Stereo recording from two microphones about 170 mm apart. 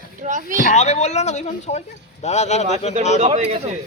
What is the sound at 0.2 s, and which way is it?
Speech, 50° right (ahead or behind).